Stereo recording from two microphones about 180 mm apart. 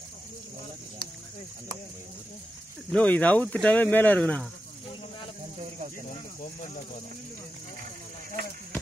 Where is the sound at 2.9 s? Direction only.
10° left (ahead or behind).